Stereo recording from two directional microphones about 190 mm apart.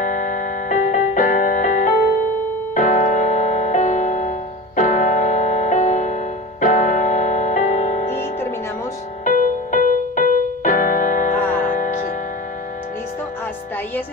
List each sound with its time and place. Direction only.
0.0 s music: 40° left (ahead or behind)
9.2 s keyboard: 40° left (ahead or behind)
11.3 s music: 10° left (ahead or behind)
11.6 s music: 45° left (ahead or behind)